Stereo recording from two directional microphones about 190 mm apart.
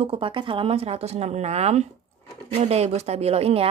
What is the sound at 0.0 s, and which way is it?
A woman's voice, 30° right (ahead or behind).